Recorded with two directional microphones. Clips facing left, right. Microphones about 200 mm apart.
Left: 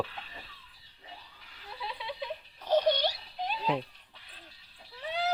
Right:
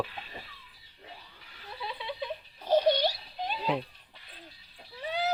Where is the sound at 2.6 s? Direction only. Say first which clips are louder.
Right 2 dB; 10° right (ahead or behind).